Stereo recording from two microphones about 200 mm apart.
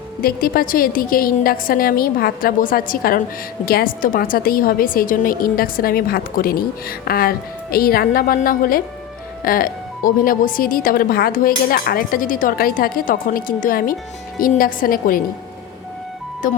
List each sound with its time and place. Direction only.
0.2 s a woman's voice: 50° left (ahead or behind)
16.4 s speech: 40° left (ahead or behind)